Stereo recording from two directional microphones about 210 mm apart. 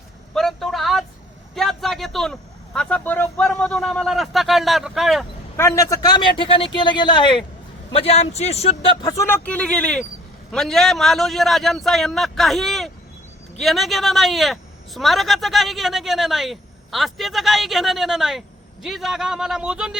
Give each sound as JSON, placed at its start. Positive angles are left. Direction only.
{"t": 0.3, "sound": "vehicle", "side_deg": 0}
{"t": 5.5, "sound": "a man's voice", "side_deg": 15}